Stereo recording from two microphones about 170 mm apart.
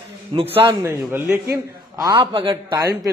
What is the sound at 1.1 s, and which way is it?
Speech, 15° right (ahead or behind).